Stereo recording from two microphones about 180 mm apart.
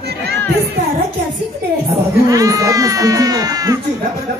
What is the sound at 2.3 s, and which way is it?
Speech, 20° right (ahead or behind).